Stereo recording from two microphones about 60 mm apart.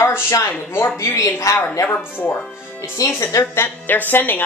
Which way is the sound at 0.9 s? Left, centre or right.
Left.